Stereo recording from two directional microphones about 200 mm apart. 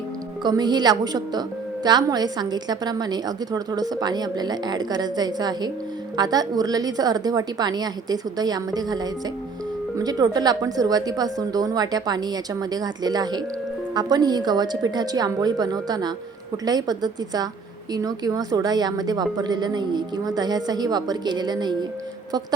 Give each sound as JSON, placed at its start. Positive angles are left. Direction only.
{"t": 0.4, "sound": "a woman's voice", "side_deg": -20}